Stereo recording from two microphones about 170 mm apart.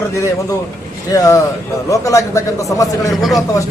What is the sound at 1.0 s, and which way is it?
A man's voice, 20° left (ahead or behind).